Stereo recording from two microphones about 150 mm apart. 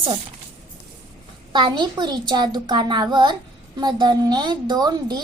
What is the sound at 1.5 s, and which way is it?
A woman's voice, 30° right (ahead or behind).